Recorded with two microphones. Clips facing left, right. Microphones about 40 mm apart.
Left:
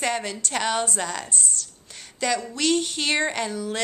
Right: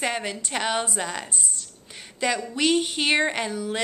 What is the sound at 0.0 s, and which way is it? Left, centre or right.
A woman's voice, centre.